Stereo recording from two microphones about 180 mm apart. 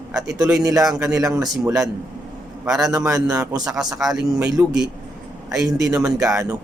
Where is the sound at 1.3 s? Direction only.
20° right (ahead or behind).